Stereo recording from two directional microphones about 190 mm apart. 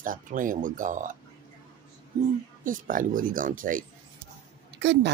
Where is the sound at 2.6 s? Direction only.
45° right (ahead or behind).